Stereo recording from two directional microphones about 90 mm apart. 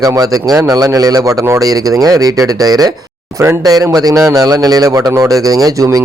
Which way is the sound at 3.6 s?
45° right (ahead or behind).